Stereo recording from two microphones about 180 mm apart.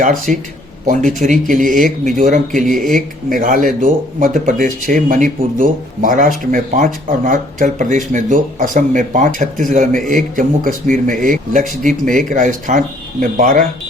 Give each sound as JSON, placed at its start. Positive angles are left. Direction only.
{"t": 0.0, "sound": "speech", "side_deg": -50}